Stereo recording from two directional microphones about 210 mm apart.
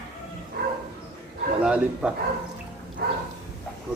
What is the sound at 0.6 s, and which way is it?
Dog, 50° right (ahead or behind).